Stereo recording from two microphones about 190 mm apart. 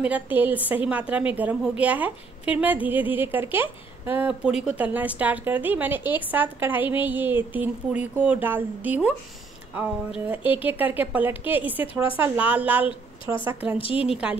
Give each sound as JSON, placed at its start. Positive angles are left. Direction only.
{"t": 0.0, "sound": "a woman's voice", "side_deg": -10}
{"t": 10.5, "sound": "a woman's voice", "side_deg": -10}
{"t": 13.7, "sound": "a woman's voice", "side_deg": 30}
{"t": 14.0, "sound": "a woman's voice", "side_deg": -5}